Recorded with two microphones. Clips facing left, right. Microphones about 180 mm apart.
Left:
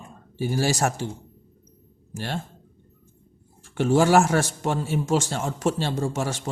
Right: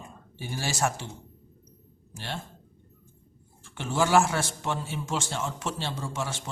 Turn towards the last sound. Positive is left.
turn(degrees=45)  # may be behind; listen again after turning